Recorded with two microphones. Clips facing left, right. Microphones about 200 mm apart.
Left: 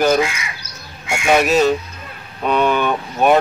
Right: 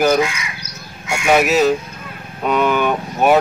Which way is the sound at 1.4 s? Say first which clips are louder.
Even; 5° right (ahead or behind).